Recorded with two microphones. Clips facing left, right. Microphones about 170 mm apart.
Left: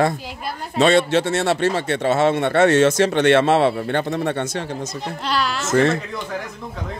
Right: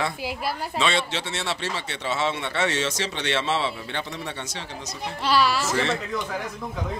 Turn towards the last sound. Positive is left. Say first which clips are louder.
# left 8 dB
turn(degrees=50)  # may be behind; listen again after turning